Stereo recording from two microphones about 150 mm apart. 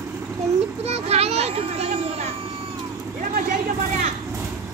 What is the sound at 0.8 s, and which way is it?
Children playing, 45° right (ahead or behind).